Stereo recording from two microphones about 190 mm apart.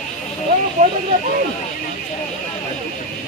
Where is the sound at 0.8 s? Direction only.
40° right (ahead or behind).